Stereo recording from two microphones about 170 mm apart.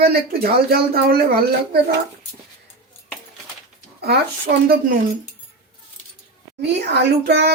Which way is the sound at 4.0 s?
65° right (ahead or behind).